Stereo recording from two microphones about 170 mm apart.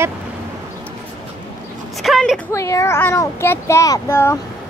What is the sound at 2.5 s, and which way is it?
Speech, 20° left (ahead or behind).